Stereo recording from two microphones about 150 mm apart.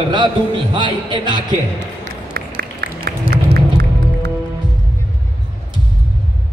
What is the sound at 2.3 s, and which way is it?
Music, 90° right.